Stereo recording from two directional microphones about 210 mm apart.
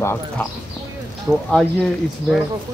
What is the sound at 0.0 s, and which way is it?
Speech, 10° left (ahead or behind).